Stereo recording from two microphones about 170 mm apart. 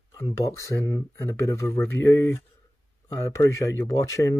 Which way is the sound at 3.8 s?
20° left (ahead or behind).